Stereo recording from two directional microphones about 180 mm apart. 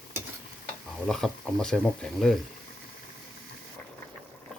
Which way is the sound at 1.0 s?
5° left (ahead or behind).